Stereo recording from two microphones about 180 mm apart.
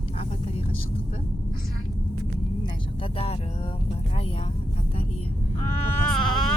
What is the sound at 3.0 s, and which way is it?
Vehicle, 30° left (ahead or behind).